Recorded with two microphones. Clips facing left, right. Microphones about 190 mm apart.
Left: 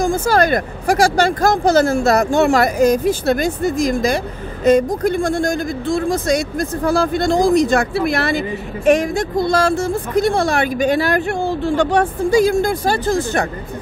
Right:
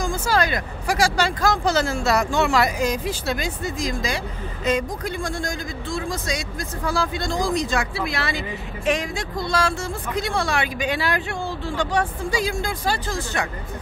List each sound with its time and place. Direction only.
0.0 s a woman's voice: 50° left (ahead or behind)